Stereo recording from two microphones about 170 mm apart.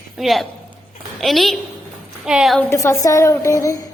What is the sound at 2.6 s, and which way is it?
A woman's voice, 15° left (ahead or behind).